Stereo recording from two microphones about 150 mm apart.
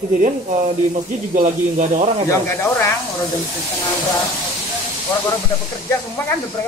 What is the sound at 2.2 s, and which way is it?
Speech, 15° left (ahead or behind).